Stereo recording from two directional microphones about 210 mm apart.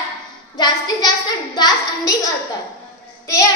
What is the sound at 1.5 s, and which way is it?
Speech, 20° left (ahead or behind).